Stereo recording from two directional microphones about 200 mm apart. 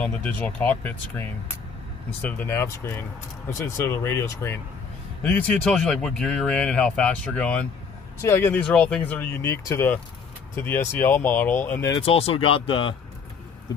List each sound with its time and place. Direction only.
0.0 s speech: 5° left (ahead or behind)
2.2 s speech: 10° left (ahead or behind)
12.0 s speech: 30° left (ahead or behind)